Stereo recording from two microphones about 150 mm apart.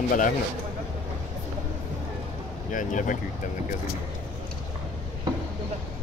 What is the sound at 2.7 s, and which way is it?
Speech, 60° left (ahead or behind).